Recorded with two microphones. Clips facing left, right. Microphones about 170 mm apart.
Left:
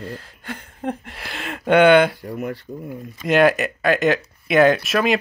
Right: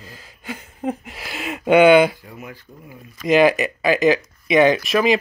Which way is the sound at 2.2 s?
65° left (ahead or behind).